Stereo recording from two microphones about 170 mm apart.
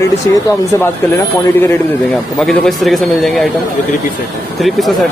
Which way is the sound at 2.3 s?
Centre (ahead or behind).